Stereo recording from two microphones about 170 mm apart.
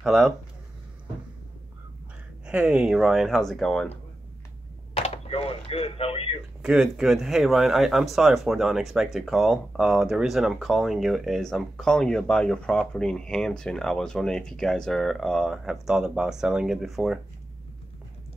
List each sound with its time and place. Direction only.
0.0 s speech: centre (ahead or behind)
2.4 s speech: 5° right (ahead or behind)
4.9 s speech: 35° left (ahead or behind)
6.6 s speech: 5° right (ahead or behind)